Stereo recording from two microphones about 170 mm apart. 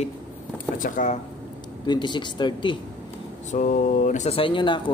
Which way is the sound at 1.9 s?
25° left (ahead or behind).